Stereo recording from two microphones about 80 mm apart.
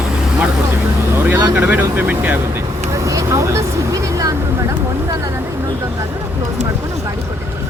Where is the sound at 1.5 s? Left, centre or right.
Right.